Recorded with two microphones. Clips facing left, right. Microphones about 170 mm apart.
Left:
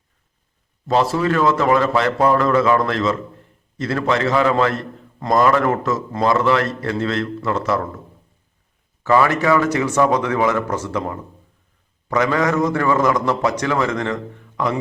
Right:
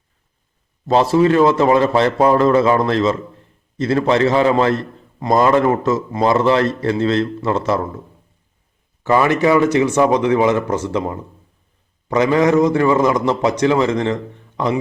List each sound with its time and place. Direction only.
0.9 s a man's voice: 25° right (ahead or behind)
9.0 s a man's voice: 20° right (ahead or behind)